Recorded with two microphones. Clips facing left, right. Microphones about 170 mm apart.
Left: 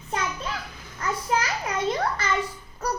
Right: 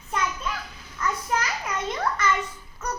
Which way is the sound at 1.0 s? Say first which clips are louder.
Left 1 dB; 30° left (ahead or behind).